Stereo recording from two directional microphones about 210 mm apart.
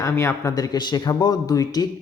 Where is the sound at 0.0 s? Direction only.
15° left (ahead or behind).